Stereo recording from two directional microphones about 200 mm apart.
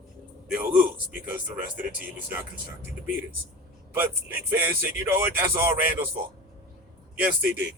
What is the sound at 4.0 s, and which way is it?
Speech, 10° right (ahead or behind).